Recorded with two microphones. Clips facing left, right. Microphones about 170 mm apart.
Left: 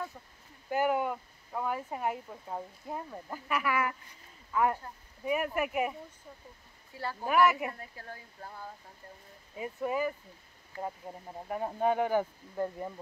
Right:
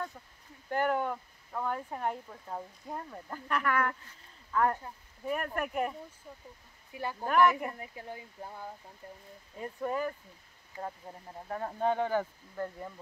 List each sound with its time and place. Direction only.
0.7 s speech: 10° left (ahead or behind)
6.9 s speech: 15° right (ahead or behind)
7.2 s speech: 5° left (ahead or behind)
7.8 s speech: 15° right (ahead or behind)
9.6 s speech: 5° left (ahead or behind)
11.4 s speech: 10° left (ahead or behind)